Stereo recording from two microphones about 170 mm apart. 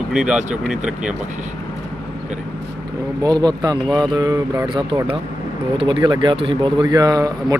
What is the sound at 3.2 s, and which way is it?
Speech, 25° right (ahead or behind).